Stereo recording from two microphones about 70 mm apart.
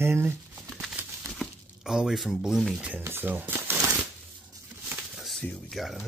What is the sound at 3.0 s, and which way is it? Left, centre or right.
Speech, right.